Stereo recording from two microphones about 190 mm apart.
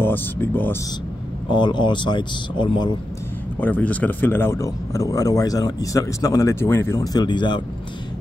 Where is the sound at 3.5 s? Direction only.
10° left (ahead or behind).